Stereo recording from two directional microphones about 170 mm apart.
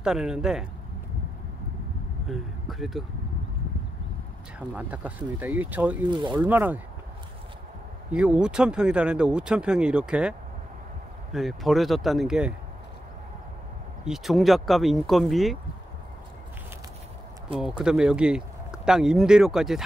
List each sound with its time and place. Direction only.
0.0 s speech: 5° right (ahead or behind)
2.2 s speech: centre (ahead or behind)
4.6 s speech: 10° right (ahead or behind)
6.0 s speech: 25° right (ahead or behind)
6.3 s speech: 10° right (ahead or behind)
8.1 s speech: 5° right (ahead or behind)
11.3 s speech: centre (ahead or behind)
14.0 s speech: centre (ahead or behind)
17.6 s speech: 5° right (ahead or behind)